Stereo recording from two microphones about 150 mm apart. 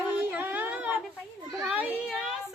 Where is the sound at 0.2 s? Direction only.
10° right (ahead or behind).